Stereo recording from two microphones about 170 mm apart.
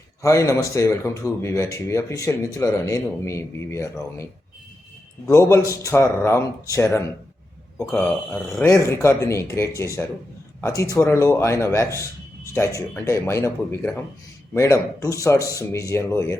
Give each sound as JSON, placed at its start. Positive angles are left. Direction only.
{"t": 0.2, "sound": "speech", "side_deg": 20}